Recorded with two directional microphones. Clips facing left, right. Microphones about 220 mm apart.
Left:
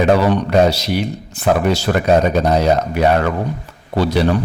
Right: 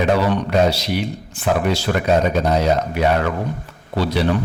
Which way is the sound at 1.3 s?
40° left (ahead or behind).